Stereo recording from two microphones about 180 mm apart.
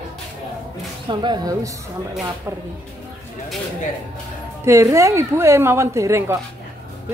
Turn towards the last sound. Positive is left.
turn(degrees=-15)  # may be behind; listen again after turning